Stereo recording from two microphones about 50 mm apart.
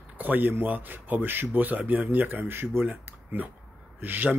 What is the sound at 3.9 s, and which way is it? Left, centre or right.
Speech, right.